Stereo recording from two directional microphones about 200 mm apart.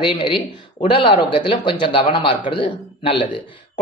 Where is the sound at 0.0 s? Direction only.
25° left (ahead or behind).